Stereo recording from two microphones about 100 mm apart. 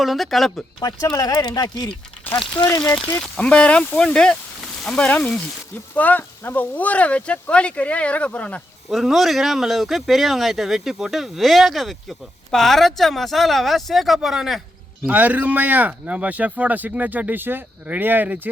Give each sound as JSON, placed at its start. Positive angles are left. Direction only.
{"t": 0.0, "sound": "speech", "side_deg": 0}
{"t": 0.8, "sound": "speech", "side_deg": 40}
{"t": 2.8, "sound": "speech", "side_deg": 5}
{"t": 8.9, "sound": "speech", "side_deg": 0}
{"t": 15.0, "sound": "speech", "side_deg": -15}